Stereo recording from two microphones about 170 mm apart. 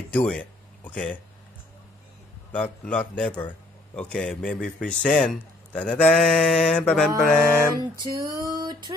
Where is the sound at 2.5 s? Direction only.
5° left (ahead or behind).